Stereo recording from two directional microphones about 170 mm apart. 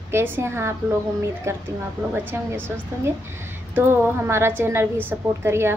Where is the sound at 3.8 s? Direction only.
15° right (ahead or behind).